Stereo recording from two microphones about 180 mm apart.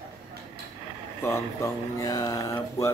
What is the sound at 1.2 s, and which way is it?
Speech, 15° left (ahead or behind).